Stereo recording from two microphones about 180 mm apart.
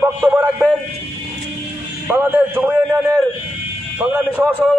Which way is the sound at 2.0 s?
10° right (ahead or behind).